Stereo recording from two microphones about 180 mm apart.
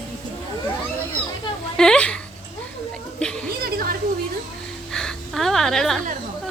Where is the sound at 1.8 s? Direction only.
5° left (ahead or behind).